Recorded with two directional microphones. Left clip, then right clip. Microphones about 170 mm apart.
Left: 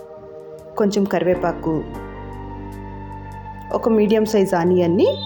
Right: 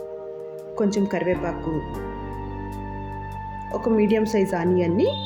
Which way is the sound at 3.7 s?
10° left (ahead or behind).